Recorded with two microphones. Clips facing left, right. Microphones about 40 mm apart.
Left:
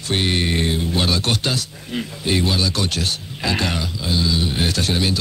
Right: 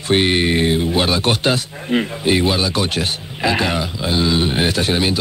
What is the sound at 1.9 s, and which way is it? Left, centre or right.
Speech, right.